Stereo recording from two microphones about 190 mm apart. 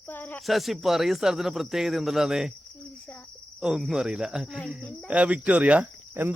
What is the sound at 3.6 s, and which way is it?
Speech, centre (ahead or behind).